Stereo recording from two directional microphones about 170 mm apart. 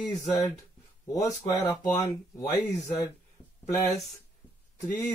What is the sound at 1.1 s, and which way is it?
Speech, 25° left (ahead or behind).